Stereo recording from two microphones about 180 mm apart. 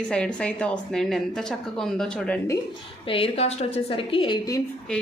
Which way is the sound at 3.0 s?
30° left (ahead or behind).